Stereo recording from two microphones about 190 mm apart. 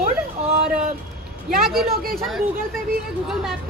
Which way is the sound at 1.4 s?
Centre (ahead or behind).